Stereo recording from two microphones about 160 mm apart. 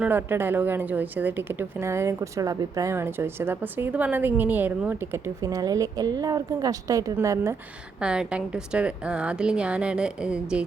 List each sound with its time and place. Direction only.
0.0 s a woman's voice: 10° right (ahead or behind)
5.4 s a woman's voice: 20° right (ahead or behind)
8.0 s a woman's voice: 5° right (ahead or behind)